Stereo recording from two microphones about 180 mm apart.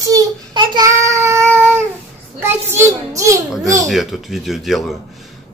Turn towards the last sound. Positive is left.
turn(degrees=0)  # may be behind; listen again after turning